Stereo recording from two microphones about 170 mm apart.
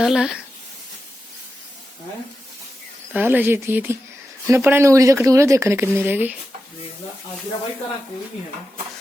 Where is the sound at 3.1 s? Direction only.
10° right (ahead or behind).